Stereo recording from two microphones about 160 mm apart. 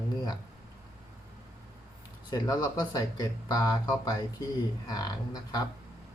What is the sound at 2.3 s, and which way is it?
Speech, 25° left (ahead or behind).